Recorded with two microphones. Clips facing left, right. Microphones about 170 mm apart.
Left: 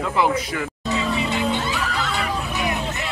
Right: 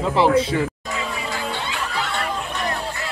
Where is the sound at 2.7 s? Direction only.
20° left (ahead or behind).